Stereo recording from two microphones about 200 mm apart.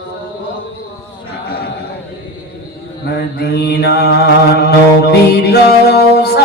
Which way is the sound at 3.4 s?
55° left (ahead or behind).